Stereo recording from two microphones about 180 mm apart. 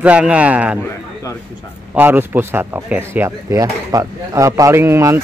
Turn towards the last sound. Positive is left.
turn(degrees=-15)  # may be behind; listen again after turning